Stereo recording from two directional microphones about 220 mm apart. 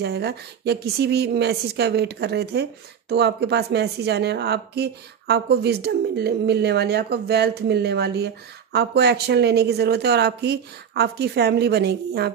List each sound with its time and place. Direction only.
0.0 s a woman's voice: 50° right (ahead or behind)